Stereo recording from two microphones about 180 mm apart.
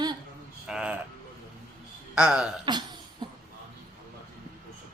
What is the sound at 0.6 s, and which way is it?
Speech, 5° right (ahead or behind).